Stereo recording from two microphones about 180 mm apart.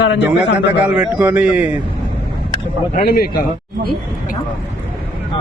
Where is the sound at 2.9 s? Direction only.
55° left (ahead or behind).